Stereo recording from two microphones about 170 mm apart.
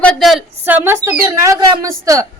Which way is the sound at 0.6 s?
15° right (ahead or behind).